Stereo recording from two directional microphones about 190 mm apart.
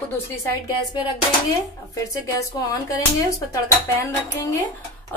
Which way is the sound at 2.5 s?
20° left (ahead or behind).